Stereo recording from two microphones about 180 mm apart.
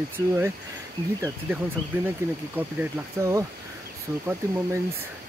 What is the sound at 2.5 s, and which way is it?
Speech, 15° right (ahead or behind).